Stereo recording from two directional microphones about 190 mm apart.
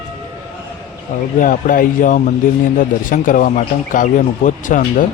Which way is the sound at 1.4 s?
45° left (ahead or behind).